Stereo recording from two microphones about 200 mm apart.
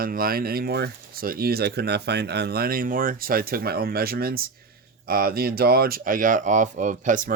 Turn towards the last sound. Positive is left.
turn(degrees=-40)  # may be behind; listen again after turning